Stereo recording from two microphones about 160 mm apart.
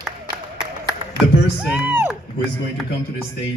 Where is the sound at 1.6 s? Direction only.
10° right (ahead or behind).